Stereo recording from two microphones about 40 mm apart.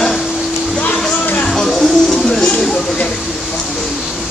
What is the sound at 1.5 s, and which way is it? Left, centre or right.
Music, centre.